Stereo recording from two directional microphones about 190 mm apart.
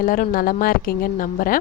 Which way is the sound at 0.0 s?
50° left (ahead or behind).